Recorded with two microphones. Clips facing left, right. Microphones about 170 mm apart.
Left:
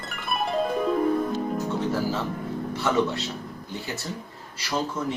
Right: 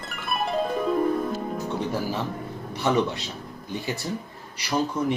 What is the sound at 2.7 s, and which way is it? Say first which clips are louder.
Speech: right 1 dB; 15° right (ahead or behind).